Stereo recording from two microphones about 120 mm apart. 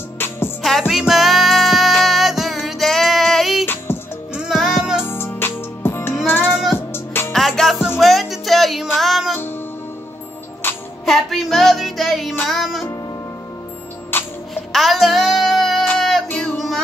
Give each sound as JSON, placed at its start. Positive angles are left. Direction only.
{"t": 0.6, "sound": "music", "side_deg": 0}
{"t": 3.6, "sound": "music", "side_deg": 20}
{"t": 4.3, "sound": "music", "side_deg": -5}
{"t": 5.0, "sound": "music", "side_deg": 20}
{"t": 6.5, "sound": "music", "side_deg": -5}
{"t": 6.9, "sound": "music", "side_deg": 20}
{"t": 7.3, "sound": "music", "side_deg": 0}
{"t": 10.6, "sound": "music", "side_deg": 20}
{"t": 11.1, "sound": "music", "side_deg": 0}
{"t": 14.1, "sound": "music", "side_deg": 20}
{"t": 14.5, "sound": "music", "side_deg": 0}
{"t": 16.0, "sound": "child singing", "side_deg": 0}
{"t": 16.3, "sound": "music", "side_deg": 15}
{"t": 16.5, "sound": "music", "side_deg": 0}